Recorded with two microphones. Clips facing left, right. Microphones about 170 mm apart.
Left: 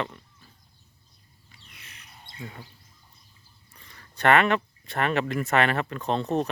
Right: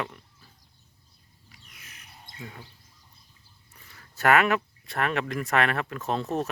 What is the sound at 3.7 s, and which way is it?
Speech, 5° right (ahead or behind).